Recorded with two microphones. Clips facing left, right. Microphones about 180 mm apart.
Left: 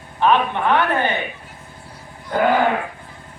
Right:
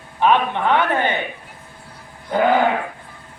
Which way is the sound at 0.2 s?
15° right (ahead or behind).